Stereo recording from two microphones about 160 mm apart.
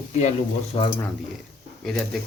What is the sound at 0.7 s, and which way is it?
Speech, 35° left (ahead or behind).